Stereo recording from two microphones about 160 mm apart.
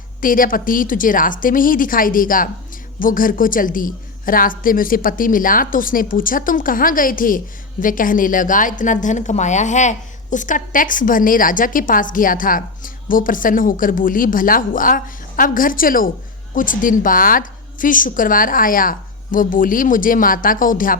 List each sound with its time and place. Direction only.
0.2 s a woman's voice: 60° left (ahead or behind)